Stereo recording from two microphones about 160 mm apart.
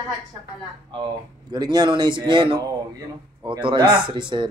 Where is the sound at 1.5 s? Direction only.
25° right (ahead or behind).